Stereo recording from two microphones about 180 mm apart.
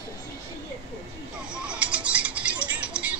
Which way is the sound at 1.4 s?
5° right (ahead or behind).